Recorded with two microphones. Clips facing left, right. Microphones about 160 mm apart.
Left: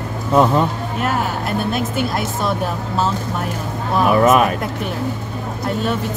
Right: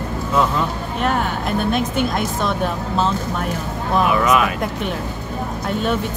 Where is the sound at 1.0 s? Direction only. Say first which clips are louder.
Right 1 dB; 5° left (ahead or behind).